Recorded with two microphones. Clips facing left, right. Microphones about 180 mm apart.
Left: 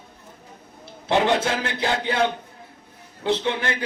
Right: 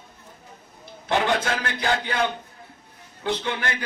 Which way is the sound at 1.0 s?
25° left (ahead or behind).